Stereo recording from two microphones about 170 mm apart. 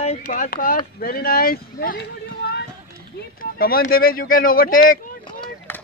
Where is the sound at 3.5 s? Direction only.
60° left (ahead or behind).